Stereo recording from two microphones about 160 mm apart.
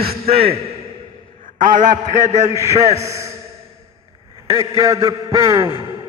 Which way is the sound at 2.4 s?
20° right (ahead or behind).